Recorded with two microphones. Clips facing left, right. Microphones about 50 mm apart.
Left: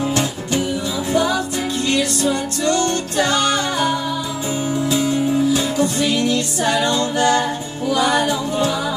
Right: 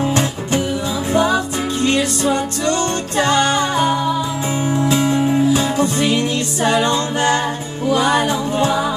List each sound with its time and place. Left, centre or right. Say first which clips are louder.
0.1 s music: right 2 dB; right